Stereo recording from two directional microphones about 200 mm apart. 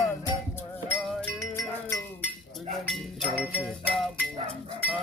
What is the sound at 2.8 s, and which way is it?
Music, 5° left (ahead or behind).